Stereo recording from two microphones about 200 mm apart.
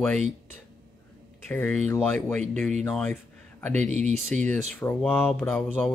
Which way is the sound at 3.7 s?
35° right (ahead or behind).